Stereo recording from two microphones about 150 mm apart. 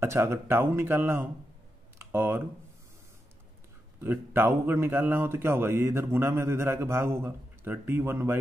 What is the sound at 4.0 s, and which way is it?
A man's voice, 15° right (ahead or behind).